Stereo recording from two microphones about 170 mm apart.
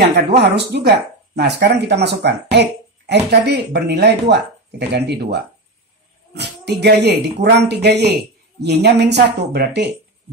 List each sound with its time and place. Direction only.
0.1 s speech: 80° right